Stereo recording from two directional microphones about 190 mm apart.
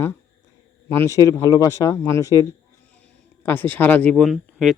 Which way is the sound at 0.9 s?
15° left (ahead or behind).